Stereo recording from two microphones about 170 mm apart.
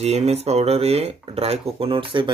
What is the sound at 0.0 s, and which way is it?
Speech, 40° right (ahead or behind).